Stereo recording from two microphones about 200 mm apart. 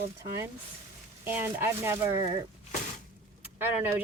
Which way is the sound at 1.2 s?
10° right (ahead or behind).